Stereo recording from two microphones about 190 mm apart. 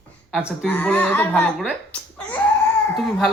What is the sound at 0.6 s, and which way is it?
Speech, 10° left (ahead or behind).